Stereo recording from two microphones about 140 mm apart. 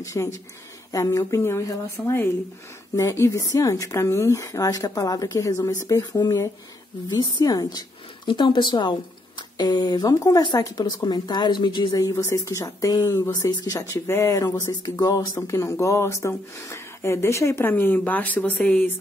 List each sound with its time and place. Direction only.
0.0 s speech: 20° left (ahead or behind)
13.7 s speech: 20° left (ahead or behind)